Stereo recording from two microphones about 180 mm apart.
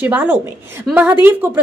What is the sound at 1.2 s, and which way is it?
Speech, 10° right (ahead or behind).